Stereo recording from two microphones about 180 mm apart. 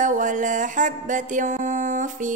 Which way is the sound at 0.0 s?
45° right (ahead or behind).